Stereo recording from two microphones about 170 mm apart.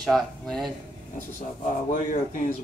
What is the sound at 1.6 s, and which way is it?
Speech, 50° left (ahead or behind).